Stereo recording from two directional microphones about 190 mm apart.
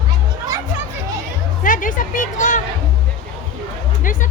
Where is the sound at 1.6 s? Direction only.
45° left (ahead or behind).